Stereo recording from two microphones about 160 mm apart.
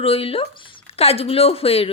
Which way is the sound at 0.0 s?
35° left (ahead or behind).